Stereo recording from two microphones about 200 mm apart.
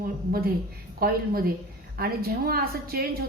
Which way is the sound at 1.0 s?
50° right (ahead or behind).